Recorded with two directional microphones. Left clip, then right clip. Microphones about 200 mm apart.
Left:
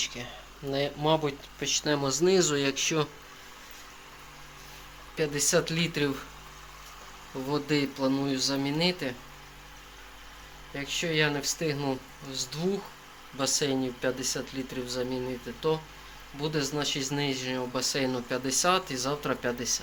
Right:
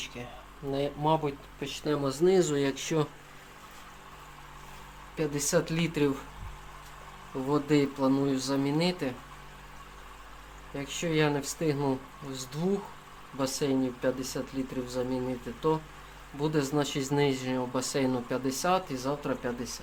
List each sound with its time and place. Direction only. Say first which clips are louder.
0.0 s speech: left 6 dB; centre (ahead or behind)
2.2 s speech: even; 5° right (ahead or behind)
5.1 s speech: left 2 dB; 5° right (ahead or behind)
7.4 s speech: right 2 dB; 15° right (ahead or behind)
10.8 s speech: left 1 dB; 15° right (ahead or behind)
13.3 s speech: left 1 dB; 10° right (ahead or behind)
16.4 s speech: right 1 dB; 25° right (ahead or behind); by 19.8 s 5° left (ahead or behind)